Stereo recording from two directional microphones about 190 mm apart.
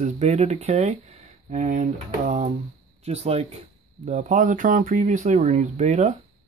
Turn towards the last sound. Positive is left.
turn(degrees=-40)  # may be behind; listen again after turning